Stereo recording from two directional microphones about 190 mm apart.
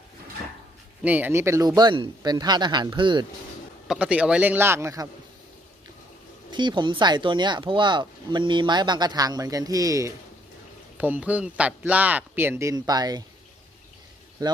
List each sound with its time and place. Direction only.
1.0 s speech: 10° right (ahead or behind); by 3.2 s 25° right (ahead or behind)
3.8 s speech: 5° right (ahead or behind)
6.5 s speech: 25° right (ahead or behind)
14.4 s speech: 20° right (ahead or behind)